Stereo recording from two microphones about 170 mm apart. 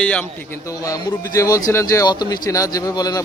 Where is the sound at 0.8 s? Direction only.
20° left (ahead or behind).